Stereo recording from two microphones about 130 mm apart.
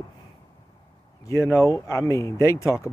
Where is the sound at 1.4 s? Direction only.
25° left (ahead or behind).